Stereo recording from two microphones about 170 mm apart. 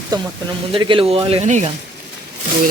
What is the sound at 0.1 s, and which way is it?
Speech, 25° right (ahead or behind).